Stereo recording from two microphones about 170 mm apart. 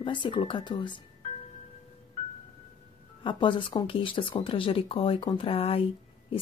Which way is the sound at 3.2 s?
30° left (ahead or behind).